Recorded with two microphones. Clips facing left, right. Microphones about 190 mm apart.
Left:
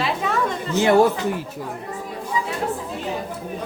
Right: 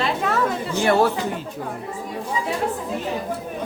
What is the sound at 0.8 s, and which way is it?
Speech, 15° left (ahead or behind).